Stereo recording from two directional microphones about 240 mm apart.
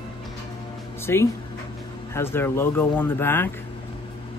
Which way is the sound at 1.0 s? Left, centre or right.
Centre.